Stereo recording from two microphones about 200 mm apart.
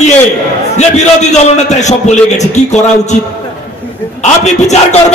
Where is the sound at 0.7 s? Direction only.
35° left (ahead or behind).